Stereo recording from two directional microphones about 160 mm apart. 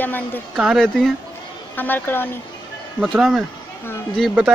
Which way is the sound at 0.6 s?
Centre (ahead or behind).